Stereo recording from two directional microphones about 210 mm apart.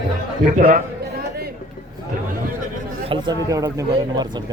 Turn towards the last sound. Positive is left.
turn(degrees=-20)  # may be behind; listen again after turning